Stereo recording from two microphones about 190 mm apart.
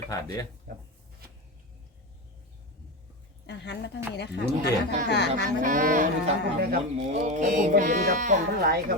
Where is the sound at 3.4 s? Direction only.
65° left (ahead or behind).